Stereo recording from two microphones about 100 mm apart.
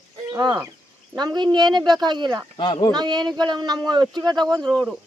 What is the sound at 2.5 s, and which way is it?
Speech, 50° left (ahead or behind).